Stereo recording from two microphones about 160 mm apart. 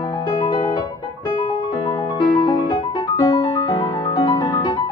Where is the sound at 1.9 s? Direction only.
35° left (ahead or behind).